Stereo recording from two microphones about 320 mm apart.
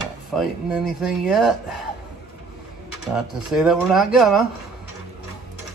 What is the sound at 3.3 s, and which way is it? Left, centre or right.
Speech, centre.